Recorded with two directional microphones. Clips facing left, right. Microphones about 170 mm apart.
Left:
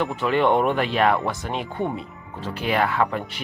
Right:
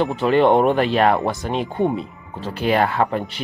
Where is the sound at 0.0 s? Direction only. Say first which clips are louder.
Right 5 dB; 30° right (ahead or behind).